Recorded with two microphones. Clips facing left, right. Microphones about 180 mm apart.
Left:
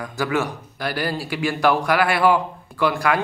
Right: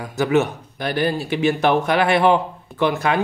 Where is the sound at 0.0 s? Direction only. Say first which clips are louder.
Right 5 dB; 20° right (ahead or behind).